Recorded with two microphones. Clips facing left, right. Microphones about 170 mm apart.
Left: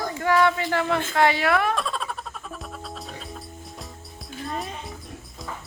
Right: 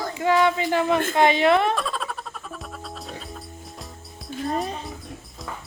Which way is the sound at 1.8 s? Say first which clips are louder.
Even; centre (ahead or behind).